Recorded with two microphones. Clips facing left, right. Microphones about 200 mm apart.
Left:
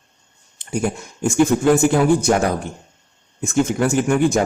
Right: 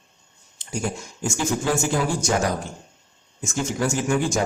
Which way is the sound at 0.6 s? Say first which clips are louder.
Left 6 dB; 60° left (ahead or behind).